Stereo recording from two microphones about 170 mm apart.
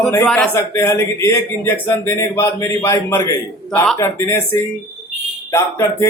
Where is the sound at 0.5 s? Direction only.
15° left (ahead or behind).